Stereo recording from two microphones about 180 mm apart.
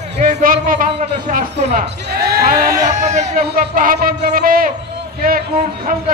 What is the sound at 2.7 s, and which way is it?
Speech, 20° right (ahead or behind).